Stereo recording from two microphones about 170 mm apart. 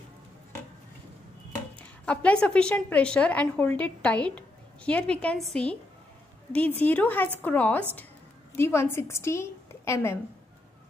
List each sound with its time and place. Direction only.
1.8 s a woman's voice: 5° left (ahead or behind)